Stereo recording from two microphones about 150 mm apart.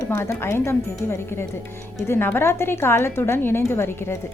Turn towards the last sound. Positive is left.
turn(degrees=15)  # may be behind; listen again after turning